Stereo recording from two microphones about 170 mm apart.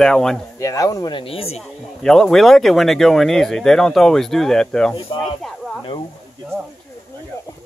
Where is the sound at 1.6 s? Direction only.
5° left (ahead or behind).